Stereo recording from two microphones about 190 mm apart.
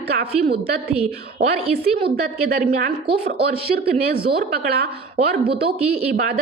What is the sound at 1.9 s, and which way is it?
A woman's voice, 55° right (ahead or behind).